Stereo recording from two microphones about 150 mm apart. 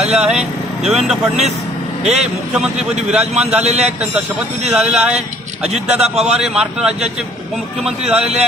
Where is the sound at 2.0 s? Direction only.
45° right (ahead or behind).